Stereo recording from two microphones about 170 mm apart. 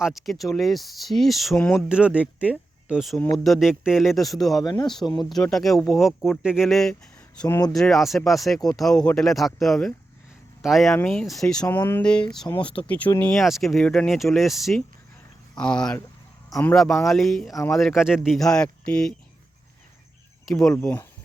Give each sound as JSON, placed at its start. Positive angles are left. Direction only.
{"t": 0.0, "sound": "speech", "side_deg": 0}
{"t": 1.5, "sound": "speech", "side_deg": 15}
{"t": 1.9, "sound": "speech", "side_deg": -5}
{"t": 4.6, "sound": "speech", "side_deg": 25}
{"t": 5.2, "sound": "speech", "side_deg": 0}
{"t": 7.4, "sound": "speech", "side_deg": 20}
{"t": 7.7, "sound": "speech", "side_deg": 0}
{"t": 17.5, "sound": "speech", "side_deg": 20}
{"t": 17.7, "sound": "speech", "side_deg": 0}
{"t": 20.4, "sound": "speech", "side_deg": 5}